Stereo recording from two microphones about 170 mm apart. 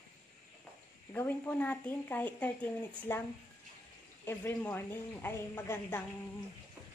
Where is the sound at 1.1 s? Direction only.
10° left (ahead or behind).